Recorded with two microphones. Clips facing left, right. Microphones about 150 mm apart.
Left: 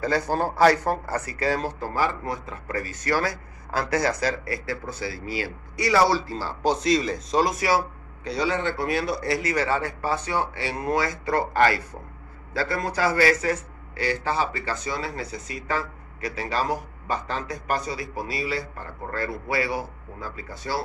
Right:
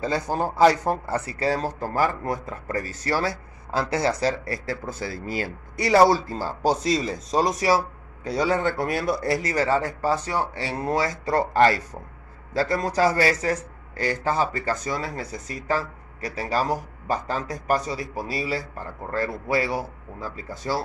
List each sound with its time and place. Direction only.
0.0 s speech: 20° right (ahead or behind); by 6.8 s 45° right (ahead or behind)
6.9 s speech: centre (ahead or behind)
7.4 s speech: 40° right (ahead or behind)